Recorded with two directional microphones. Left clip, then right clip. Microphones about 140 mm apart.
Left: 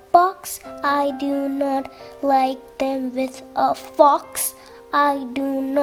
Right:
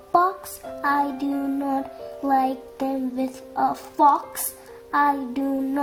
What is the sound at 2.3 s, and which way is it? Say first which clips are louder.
Child singing: left 4 dB; 60° left (ahead or behind).